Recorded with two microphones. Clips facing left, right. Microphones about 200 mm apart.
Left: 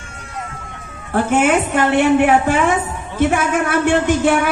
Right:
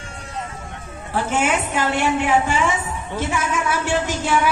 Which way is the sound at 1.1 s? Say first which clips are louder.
Left 6 dB; 55° left (ahead or behind).